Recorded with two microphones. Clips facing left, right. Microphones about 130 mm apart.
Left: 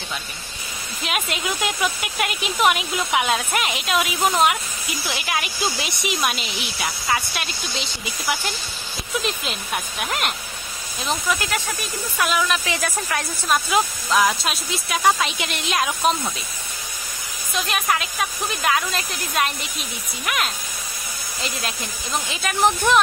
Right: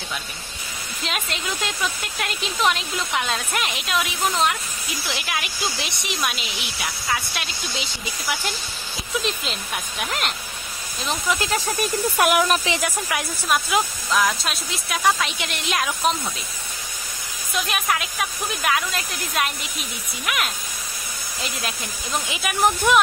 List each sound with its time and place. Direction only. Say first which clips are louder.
1.0 s speech: left 3 dB; 5° left (ahead or behind)
11.2 s speech: right 3 dB; 25° right (ahead or behind)
11.8 s speech: right 5 dB; 55° right (ahead or behind)
12.6 s speech: right 1 dB; 20° right (ahead or behind)
13.1 s speech: left 2 dB; 5° right (ahead or behind)
17.6 s speech: left 2 dB; centre (ahead or behind)
22.3 s speech: left 1 dB; 10° right (ahead or behind)